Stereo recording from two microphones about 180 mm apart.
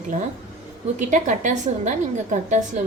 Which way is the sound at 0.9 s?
45° right (ahead or behind).